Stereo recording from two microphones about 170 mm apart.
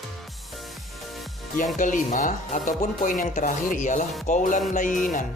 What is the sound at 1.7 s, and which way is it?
Speech, 50° left (ahead or behind).